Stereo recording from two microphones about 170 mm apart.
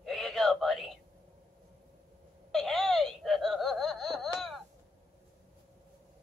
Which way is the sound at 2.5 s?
Centre (ahead or behind).